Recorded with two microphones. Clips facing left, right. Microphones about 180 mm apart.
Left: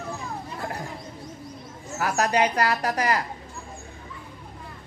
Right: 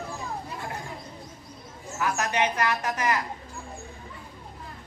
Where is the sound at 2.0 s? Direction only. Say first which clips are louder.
Left 4 dB; 35° left (ahead or behind).